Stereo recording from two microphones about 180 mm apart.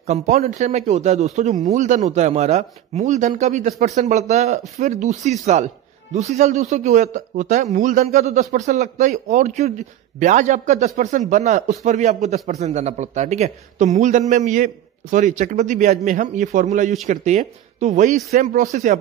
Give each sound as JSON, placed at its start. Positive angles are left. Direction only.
{"t": 0.0, "sound": "a man's voice", "side_deg": -40}